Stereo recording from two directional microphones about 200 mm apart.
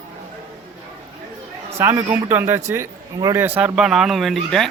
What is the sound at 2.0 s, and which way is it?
Speech, 25° right (ahead or behind).